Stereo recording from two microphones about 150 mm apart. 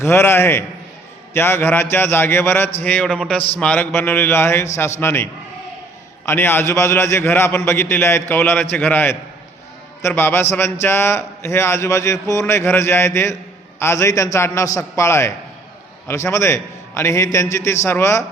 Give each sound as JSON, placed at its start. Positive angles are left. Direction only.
{"t": 0.0, "sound": "a man's voice", "side_deg": 15}